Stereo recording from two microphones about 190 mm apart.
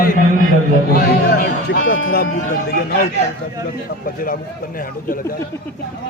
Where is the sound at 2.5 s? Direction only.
55° left (ahead or behind).